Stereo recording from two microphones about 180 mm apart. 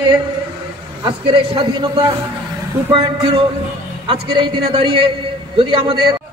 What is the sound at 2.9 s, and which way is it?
A man's voice, 25° right (ahead or behind).